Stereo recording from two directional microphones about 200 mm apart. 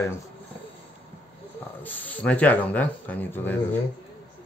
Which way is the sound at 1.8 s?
10° left (ahead or behind).